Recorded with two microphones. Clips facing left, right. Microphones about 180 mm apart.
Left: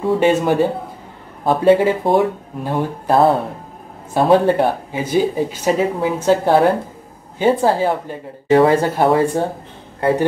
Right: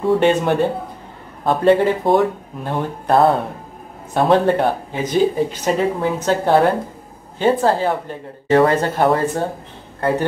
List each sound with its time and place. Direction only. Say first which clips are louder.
0.0 s a man's voice: even; 5° left (ahead or behind)